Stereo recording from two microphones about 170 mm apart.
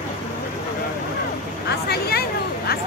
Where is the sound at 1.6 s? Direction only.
70° left (ahead or behind).